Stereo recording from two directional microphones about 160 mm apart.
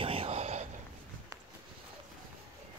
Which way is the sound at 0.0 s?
35° right (ahead or behind).